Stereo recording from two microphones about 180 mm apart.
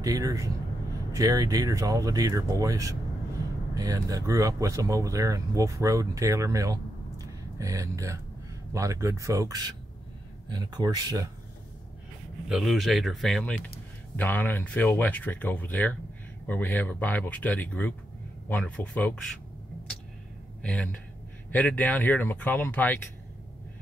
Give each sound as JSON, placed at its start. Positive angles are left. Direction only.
{"t": 0.0, "sound": "speech", "side_deg": -20}
{"t": 12.4, "sound": "speech", "side_deg": 0}
{"t": 20.6, "sound": "speech", "side_deg": 5}